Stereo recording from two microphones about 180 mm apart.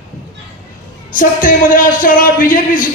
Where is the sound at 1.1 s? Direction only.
50° left (ahead or behind).